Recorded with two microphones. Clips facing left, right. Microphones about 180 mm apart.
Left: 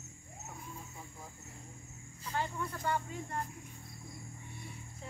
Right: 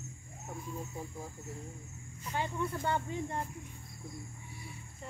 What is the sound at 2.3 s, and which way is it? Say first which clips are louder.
Speech: right 3 dB; 20° right (ahead or behind).